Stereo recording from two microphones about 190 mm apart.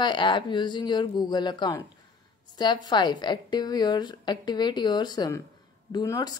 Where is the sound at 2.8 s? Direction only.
25° left (ahead or behind).